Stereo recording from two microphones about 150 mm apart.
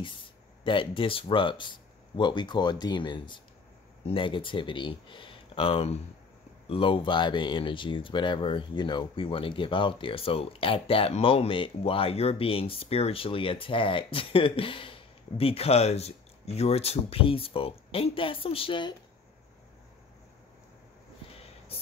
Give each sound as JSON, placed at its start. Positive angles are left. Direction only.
{"t": 0.7, "sound": "speech", "side_deg": 35}